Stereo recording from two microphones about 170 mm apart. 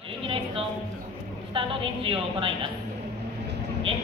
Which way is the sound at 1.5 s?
30° right (ahead or behind).